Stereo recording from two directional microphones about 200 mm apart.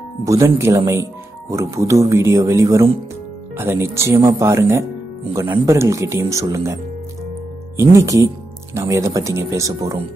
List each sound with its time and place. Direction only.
0.2 s speech: 15° right (ahead or behind)